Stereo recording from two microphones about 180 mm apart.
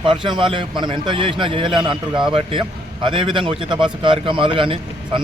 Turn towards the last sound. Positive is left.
turn(degrees=-30)  # may be behind; listen again after turning